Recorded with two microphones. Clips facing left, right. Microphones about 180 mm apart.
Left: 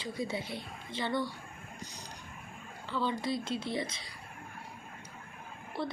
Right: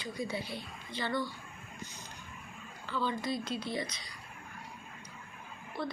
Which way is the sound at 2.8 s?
25° left (ahead or behind).